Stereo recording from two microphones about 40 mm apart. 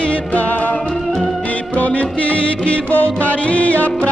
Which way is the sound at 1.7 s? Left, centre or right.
Left.